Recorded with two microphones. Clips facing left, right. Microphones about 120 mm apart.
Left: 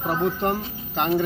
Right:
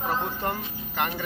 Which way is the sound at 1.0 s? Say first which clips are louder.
Left 7 dB; 35° left (ahead or behind).